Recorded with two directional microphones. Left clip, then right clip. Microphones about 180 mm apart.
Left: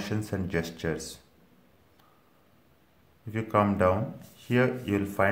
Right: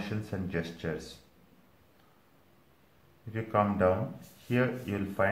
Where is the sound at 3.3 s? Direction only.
25° left (ahead or behind).